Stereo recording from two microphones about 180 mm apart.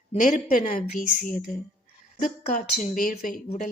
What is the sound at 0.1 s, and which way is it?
Speech, 45° left (ahead or behind).